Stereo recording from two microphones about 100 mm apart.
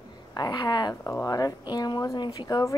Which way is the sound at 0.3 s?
45° left (ahead or behind).